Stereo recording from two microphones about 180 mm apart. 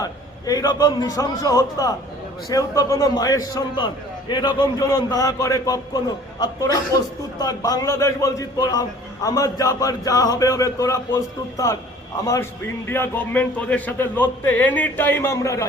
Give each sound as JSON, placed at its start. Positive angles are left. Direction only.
{"t": 0.0, "sound": "a man's voice", "side_deg": 20}